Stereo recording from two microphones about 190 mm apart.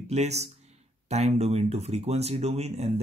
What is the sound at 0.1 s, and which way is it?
Speech, 35° right (ahead or behind).